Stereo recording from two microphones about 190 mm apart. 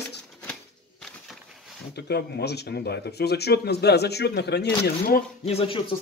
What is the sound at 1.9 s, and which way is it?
Speech, 60° left (ahead or behind).